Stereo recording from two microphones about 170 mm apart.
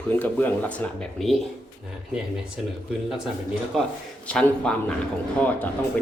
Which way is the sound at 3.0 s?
5° right (ahead or behind).